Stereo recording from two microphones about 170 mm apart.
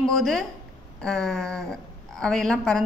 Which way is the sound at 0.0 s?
Centre (ahead or behind).